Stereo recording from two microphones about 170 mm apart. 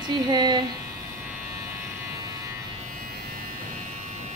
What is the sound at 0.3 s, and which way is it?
Speech, 25° right (ahead or behind).